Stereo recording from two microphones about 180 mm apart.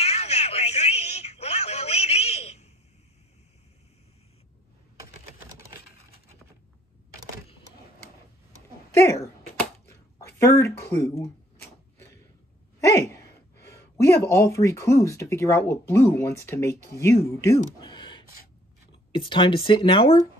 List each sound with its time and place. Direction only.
0.0 s telephone: 35° left (ahead or behind)
8.9 s speech: 15° left (ahead or behind)
9.8 s a sound: 15° left (ahead or behind)
10.8 s speech: 15° left (ahead or behind)
12.8 s speech: 15° left (ahead or behind)
17.7 s a sound: 25° left (ahead or behind)
19.1 s speech: 25° left (ahead or behind)